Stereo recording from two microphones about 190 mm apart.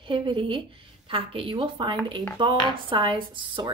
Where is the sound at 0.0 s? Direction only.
25° right (ahead or behind).